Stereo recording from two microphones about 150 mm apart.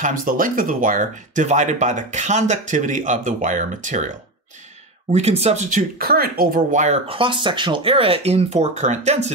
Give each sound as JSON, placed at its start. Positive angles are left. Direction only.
{"t": 0.0, "sound": "speech", "side_deg": -65}
{"t": 5.1, "sound": "speech", "side_deg": -45}
{"t": 7.1, "sound": "speech", "side_deg": -35}